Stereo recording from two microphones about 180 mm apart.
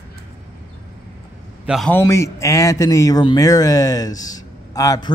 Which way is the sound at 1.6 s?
5° right (ahead or behind).